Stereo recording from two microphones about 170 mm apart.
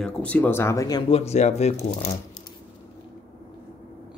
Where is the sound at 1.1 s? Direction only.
40° left (ahead or behind).